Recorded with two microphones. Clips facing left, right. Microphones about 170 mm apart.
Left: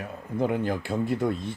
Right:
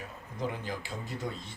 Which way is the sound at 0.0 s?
60° left (ahead or behind).